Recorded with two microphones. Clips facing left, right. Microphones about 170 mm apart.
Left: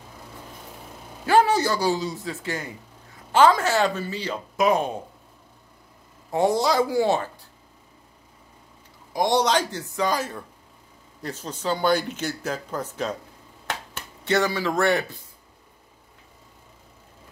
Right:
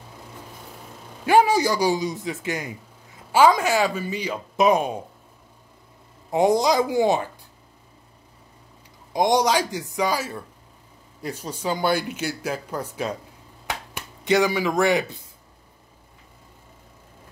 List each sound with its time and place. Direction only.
1.2 s speech: 10° right (ahead or behind)
6.3 s speech: 15° right (ahead or behind)
9.1 s speech: 15° right (ahead or behind)
13.7 s finger snapping: 10° right (ahead or behind)